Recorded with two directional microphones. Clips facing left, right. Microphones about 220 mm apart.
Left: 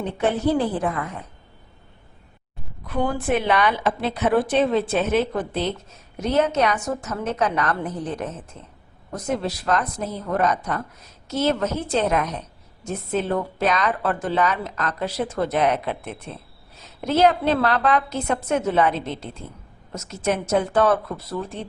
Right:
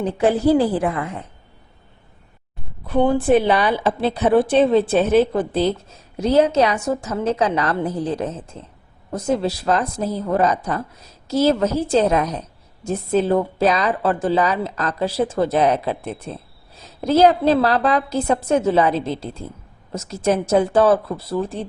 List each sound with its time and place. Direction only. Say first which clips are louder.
0.0 s speech: right 5 dB; 30° right (ahead or behind)
2.8 s a woman's voice: right 7 dB; 30° right (ahead or behind)